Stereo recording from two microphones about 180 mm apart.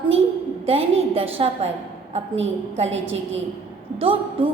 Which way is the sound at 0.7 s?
35° right (ahead or behind).